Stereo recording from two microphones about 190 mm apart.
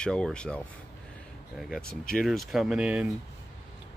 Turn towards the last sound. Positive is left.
turn(degrees=-5)  # may be behind; listen again after turning